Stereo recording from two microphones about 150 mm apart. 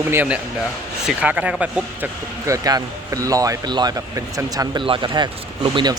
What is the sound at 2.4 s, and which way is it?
A man's voice, 20° right (ahead or behind).